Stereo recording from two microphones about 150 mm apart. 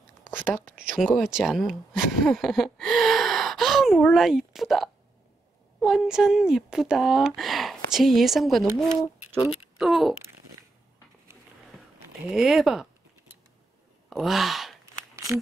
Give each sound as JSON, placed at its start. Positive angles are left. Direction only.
{"t": 0.2, "sound": "whispering", "side_deg": 15}
{"t": 0.9, "sound": "speech", "side_deg": -5}
{"t": 12.3, "sound": "speech", "side_deg": -5}
{"t": 14.0, "sound": "sigh", "side_deg": 0}
{"t": 15.2, "sound": "a sound", "side_deg": -20}